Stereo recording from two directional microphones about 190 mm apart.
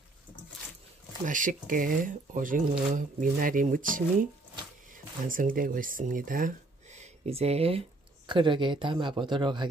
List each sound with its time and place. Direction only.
1.2 s speech: 45° right (ahead or behind); by 9.7 s 25° right (ahead or behind)